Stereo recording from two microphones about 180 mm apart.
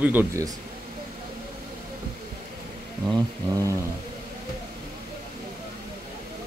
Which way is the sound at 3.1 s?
20° right (ahead or behind).